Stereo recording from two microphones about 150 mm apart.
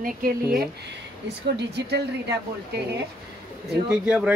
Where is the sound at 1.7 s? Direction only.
90° right.